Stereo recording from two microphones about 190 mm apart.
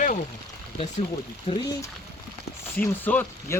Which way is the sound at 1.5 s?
30° left (ahead or behind).